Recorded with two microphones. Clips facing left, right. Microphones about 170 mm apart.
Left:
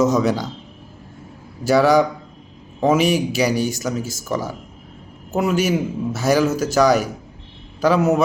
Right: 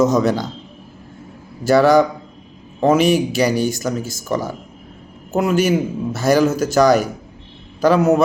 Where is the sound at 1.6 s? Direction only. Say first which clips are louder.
Right 2 dB; 10° left (ahead or behind).